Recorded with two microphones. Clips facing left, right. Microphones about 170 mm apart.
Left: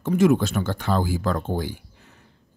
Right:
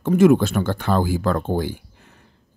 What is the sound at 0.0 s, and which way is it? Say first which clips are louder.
Speech: right 4 dB; 55° right (ahead or behind).